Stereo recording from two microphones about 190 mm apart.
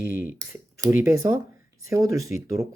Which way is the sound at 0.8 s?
10° right (ahead or behind).